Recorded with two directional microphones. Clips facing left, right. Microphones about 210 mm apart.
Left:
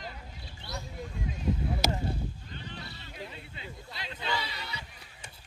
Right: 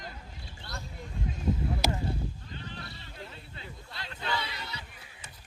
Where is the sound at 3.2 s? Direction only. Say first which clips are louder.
Left 3 dB; 15° left (ahead or behind).